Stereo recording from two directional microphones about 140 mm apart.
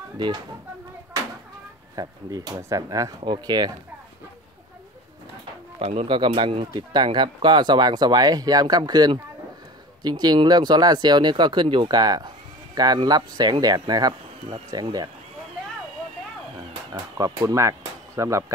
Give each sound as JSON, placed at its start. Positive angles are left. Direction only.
{"t": 0.2, "sound": "speech", "side_deg": -30}
{"t": 2.0, "sound": "speech", "side_deg": -25}
{"t": 5.8, "sound": "speech", "side_deg": -45}
{"t": 16.9, "sound": "speech", "side_deg": -25}